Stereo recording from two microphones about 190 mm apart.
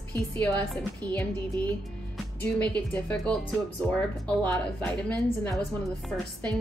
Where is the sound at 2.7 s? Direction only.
5° left (ahead or behind).